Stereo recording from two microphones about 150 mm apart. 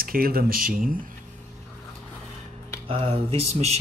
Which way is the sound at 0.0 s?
80° right.